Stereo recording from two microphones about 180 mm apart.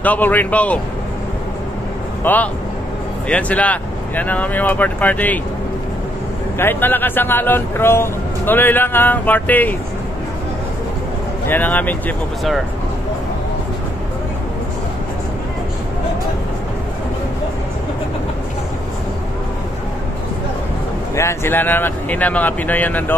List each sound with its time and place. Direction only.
0.0 s a man's voice: 10° left (ahead or behind)
2.2 s a man's voice: 10° left (ahead or behind)
6.6 s a man's voice: 10° left (ahead or behind)
11.4 s a man's voice: 10° left (ahead or behind)
21.1 s a man's voice: 15° left (ahead or behind)